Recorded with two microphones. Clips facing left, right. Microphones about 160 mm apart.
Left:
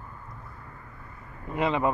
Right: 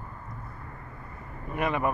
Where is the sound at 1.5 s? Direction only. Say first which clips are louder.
Left 2 dB; 20° left (ahead or behind).